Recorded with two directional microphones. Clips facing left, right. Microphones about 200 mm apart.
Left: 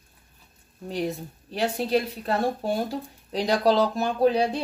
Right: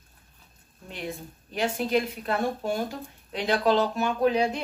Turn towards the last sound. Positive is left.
turn(degrees=35)  # may be behind; listen again after turning